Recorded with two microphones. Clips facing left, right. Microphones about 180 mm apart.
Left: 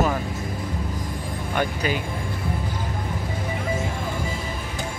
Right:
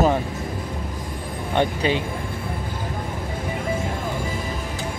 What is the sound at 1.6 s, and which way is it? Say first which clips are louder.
Speech: right 4 dB; 25° right (ahead or behind).